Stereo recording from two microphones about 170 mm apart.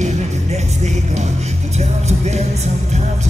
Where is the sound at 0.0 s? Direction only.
40° right (ahead or behind).